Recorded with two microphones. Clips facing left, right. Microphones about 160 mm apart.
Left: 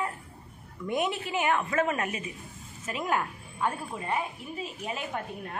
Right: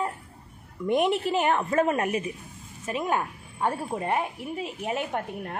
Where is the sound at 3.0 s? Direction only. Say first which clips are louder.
Right 1 dB; 20° right (ahead or behind).